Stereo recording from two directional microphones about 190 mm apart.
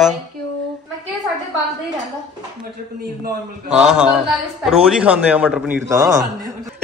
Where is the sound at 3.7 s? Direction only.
5° right (ahead or behind).